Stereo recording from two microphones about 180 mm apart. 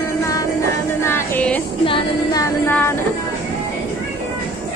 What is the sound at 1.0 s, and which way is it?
Music, 10° left (ahead or behind).